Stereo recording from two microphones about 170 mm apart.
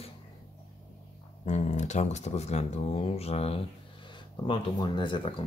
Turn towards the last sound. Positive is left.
turn(degrees=30)  # may be behind; listen again after turning